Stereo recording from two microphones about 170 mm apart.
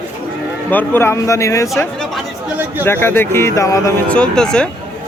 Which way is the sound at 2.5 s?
10° right (ahead or behind).